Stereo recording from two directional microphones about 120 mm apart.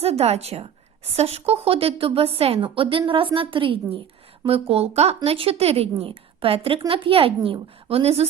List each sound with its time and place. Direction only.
0.0 s a woman's voice: 55° right (ahead or behind)